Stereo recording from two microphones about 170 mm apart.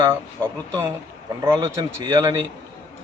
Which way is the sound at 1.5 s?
15° right (ahead or behind).